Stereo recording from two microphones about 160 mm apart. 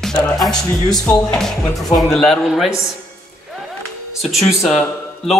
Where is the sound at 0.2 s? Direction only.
5° left (ahead or behind).